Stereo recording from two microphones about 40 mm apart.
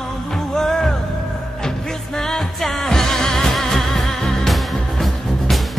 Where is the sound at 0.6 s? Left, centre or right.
Centre.